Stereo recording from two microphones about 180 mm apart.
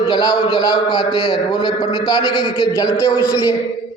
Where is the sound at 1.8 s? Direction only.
20° left (ahead or behind).